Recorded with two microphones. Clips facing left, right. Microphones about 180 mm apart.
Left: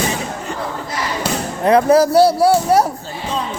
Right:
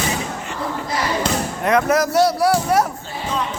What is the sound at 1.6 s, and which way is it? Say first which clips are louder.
Speech: left 6 dB; 30° left (ahead or behind).